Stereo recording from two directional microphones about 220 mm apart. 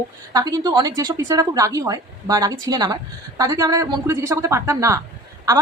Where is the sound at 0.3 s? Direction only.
15° right (ahead or behind).